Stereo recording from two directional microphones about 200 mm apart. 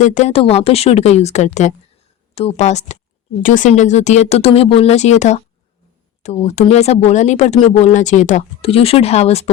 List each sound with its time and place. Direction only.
0.0 s speech: 35° left (ahead or behind)